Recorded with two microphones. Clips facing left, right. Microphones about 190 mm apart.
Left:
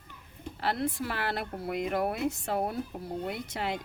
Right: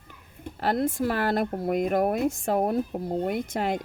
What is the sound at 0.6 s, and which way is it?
A woman's voice, 45° right (ahead or behind).